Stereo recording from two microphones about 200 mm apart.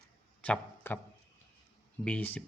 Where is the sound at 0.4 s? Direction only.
5° left (ahead or behind).